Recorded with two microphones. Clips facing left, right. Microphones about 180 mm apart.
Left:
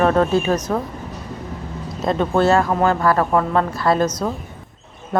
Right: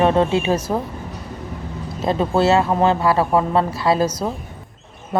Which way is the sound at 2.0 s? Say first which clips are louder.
Even; 5° right (ahead or behind).